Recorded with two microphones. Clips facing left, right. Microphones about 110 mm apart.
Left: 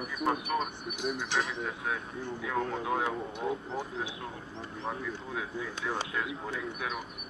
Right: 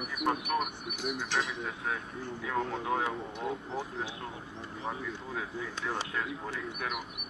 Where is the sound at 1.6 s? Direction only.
Centre (ahead or behind).